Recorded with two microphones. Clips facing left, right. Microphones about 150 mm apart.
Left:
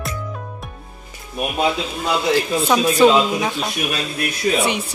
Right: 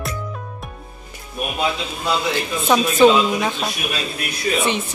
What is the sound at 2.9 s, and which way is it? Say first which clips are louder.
Speech: right 1 dB; 10° left (ahead or behind).